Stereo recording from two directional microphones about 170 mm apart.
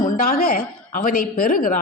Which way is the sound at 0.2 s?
55° left (ahead or behind).